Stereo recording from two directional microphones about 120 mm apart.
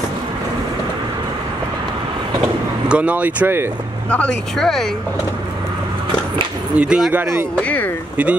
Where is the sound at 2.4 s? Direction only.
10° right (ahead or behind).